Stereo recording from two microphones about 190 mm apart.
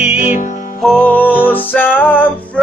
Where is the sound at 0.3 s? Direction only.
40° left (ahead or behind).